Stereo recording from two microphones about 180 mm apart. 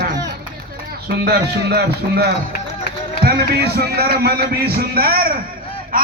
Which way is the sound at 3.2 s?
60° right (ahead or behind).